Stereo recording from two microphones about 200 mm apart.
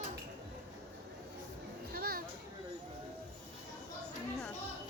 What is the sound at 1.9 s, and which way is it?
Children playing, 50° right (ahead or behind).